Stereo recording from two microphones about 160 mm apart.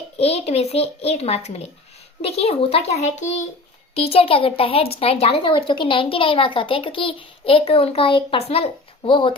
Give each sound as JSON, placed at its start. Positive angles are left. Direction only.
{"t": 0.2, "sound": "speech", "side_deg": 40}